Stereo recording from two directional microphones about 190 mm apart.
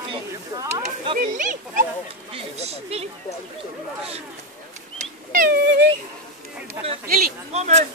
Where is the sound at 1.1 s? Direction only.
40° right (ahead or behind).